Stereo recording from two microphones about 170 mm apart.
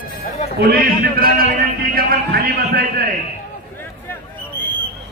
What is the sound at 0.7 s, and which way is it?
A man's voice, 60° right (ahead or behind).